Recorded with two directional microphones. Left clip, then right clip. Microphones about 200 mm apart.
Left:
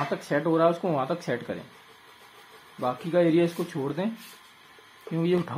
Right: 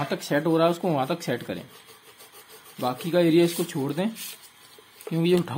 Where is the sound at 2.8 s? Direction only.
30° right (ahead or behind).